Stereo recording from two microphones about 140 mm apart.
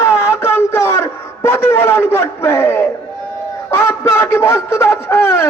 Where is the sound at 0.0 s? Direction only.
20° left (ahead or behind).